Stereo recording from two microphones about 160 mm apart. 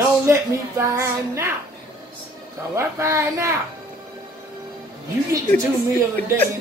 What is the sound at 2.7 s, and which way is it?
Speech, 15° right (ahead or behind).